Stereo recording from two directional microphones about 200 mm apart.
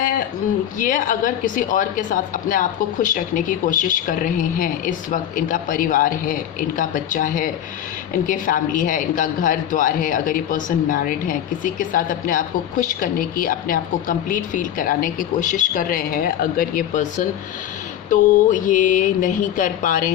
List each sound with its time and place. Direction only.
0.8 s a woman's voice: 40° left (ahead or behind)